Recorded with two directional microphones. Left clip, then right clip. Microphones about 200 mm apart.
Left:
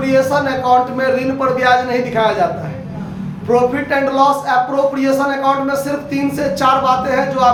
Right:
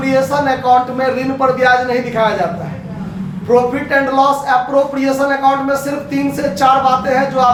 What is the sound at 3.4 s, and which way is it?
A man's voice, 15° left (ahead or behind).